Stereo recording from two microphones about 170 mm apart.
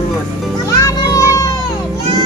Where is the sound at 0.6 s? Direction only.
20° left (ahead or behind).